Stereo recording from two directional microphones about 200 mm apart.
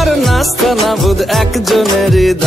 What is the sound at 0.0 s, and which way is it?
Music, centre (ahead or behind).